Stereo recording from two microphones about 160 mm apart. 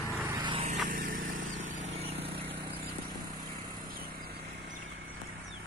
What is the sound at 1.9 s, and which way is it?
Vehicle, 40° right (ahead or behind).